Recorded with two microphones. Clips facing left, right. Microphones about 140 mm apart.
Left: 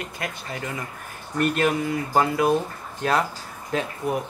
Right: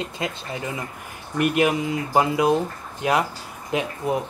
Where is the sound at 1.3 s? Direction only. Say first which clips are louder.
Right 2 dB; 10° right (ahead or behind).